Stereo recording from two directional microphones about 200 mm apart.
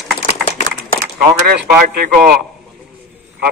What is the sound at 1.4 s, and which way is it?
A man's voice, 50° right (ahead or behind).